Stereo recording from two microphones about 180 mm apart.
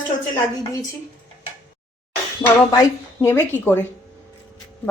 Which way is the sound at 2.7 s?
15° left (ahead or behind).